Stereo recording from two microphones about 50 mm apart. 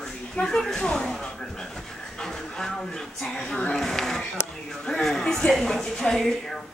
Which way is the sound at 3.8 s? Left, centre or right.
Centre.